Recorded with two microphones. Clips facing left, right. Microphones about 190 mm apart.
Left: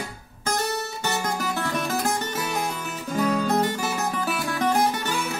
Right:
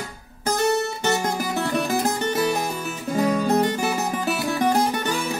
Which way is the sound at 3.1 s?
15° right (ahead or behind).